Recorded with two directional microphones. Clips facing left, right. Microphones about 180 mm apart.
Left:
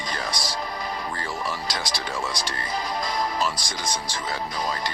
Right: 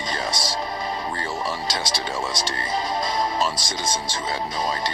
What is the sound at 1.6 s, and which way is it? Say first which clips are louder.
Speech: right 3 dB; 25° right (ahead or behind).